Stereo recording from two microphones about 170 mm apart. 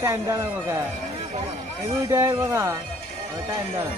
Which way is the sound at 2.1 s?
15° right (ahead or behind).